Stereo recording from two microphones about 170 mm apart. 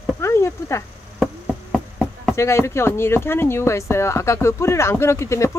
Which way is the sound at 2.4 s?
15° left (ahead or behind).